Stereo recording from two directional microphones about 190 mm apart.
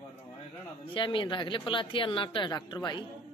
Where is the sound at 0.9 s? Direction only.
25° left (ahead or behind).